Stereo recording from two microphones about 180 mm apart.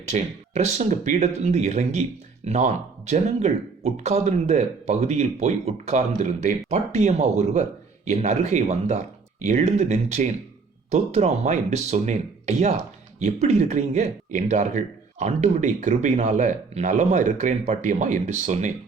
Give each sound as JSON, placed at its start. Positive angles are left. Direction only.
{"t": 0.1, "sound": "speech", "side_deg": -35}